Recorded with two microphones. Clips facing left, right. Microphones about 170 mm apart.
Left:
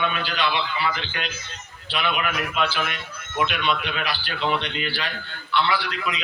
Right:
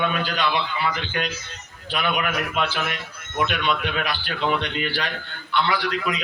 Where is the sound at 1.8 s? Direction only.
45° right (ahead or behind).